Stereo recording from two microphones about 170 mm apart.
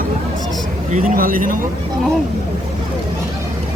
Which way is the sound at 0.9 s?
55° right (ahead or behind).